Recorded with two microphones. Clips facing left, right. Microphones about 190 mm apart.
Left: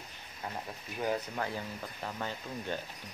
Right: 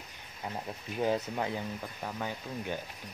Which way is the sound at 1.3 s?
15° right (ahead or behind).